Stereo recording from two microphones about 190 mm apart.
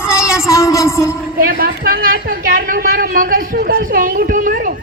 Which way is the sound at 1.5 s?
50° right (ahead or behind).